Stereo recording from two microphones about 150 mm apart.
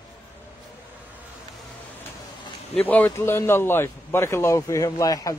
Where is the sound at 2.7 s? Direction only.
10° left (ahead or behind).